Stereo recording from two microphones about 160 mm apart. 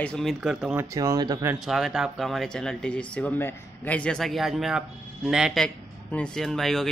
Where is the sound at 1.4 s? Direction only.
5° right (ahead or behind).